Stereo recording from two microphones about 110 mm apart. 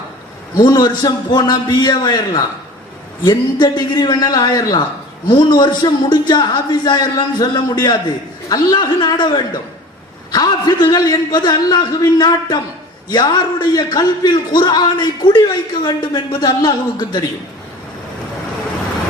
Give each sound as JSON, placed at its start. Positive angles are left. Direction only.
{"t": 0.6, "sound": "a man's voice", "side_deg": 40}